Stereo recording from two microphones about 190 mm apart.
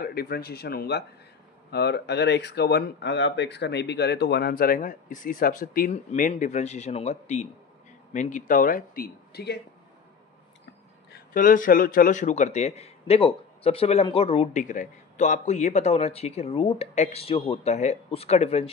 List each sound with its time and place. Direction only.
0.0 s speech: 55° left (ahead or behind)
11.1 s a man's voice: 45° left (ahead or behind)